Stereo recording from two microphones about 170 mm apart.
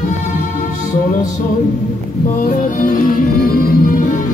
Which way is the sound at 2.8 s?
55° left (ahead or behind).